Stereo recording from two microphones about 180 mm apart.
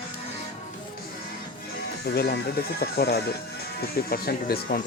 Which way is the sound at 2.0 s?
60° left (ahead or behind).